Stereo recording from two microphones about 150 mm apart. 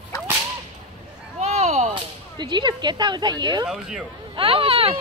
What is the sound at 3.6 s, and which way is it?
Speech, 5° right (ahead or behind).